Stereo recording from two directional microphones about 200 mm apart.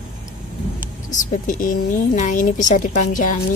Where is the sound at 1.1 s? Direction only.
40° left (ahead or behind).